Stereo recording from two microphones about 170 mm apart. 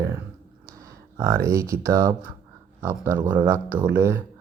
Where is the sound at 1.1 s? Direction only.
15° right (ahead or behind).